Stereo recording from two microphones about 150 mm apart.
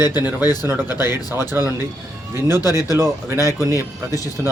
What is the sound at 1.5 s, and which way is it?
Speech, 15° right (ahead or behind).